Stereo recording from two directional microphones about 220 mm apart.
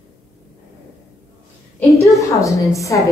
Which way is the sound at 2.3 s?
15° left (ahead or behind).